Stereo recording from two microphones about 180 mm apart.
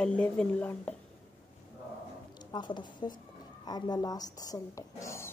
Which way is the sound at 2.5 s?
25° left (ahead or behind).